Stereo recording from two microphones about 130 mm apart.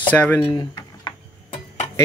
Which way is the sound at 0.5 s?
30° left (ahead or behind).